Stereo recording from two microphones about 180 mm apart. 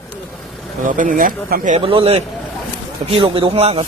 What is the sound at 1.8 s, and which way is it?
A man's voice, 30° right (ahead or behind).